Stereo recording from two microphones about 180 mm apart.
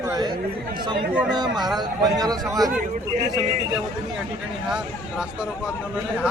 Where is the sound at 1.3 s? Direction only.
25° right (ahead or behind).